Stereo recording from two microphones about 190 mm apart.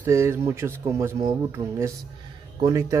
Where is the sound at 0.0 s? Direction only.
15° right (ahead or behind).